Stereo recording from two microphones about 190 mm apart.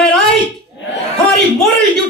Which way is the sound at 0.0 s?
5° left (ahead or behind).